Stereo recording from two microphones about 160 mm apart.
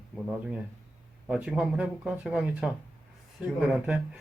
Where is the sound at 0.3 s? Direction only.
5° right (ahead or behind).